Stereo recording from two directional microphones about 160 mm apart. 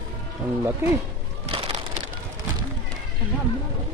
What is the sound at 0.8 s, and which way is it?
Speech, 15° right (ahead or behind).